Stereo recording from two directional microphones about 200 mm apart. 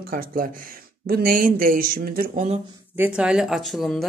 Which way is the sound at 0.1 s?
45° right (ahead or behind).